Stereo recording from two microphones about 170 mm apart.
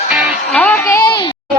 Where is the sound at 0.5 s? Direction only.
10° left (ahead or behind).